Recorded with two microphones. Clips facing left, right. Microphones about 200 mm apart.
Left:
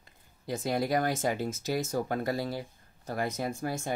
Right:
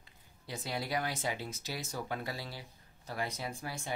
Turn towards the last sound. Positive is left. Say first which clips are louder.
# left 8 dB
turn(degrees=45)  # may be behind; listen again after turning